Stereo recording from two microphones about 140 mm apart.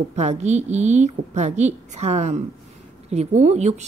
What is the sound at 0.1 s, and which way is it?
A woman's voice, 55° right (ahead or behind).